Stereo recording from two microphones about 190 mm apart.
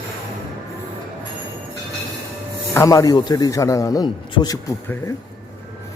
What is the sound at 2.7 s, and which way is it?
A man's voice, 15° left (ahead or behind).